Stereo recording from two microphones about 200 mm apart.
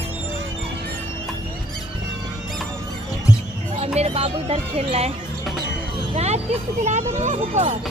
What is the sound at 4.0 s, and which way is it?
Speech, 30° right (ahead or behind).